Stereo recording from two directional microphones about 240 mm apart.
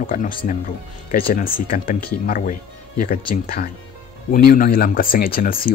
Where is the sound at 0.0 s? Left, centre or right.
Left.